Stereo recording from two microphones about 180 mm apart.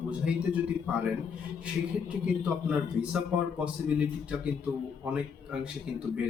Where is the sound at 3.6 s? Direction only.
5° right (ahead or behind).